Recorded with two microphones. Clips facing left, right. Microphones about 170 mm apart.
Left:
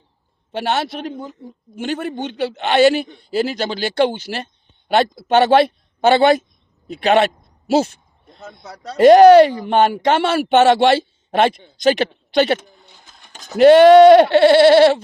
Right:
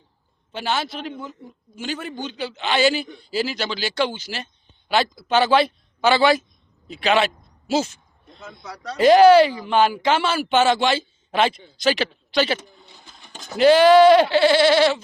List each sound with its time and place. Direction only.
0.5 s a man's voice: 60° left (ahead or behind)
9.0 s speech: 50° left (ahead or behind)
12.5 s a sound: centre (ahead or behind)
13.6 s speech: 55° left (ahead or behind)